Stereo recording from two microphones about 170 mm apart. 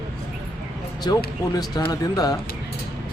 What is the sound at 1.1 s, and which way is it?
A man's voice, 25° left (ahead or behind).